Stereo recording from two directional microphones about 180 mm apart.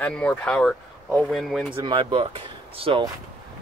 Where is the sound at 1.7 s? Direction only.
25° right (ahead or behind).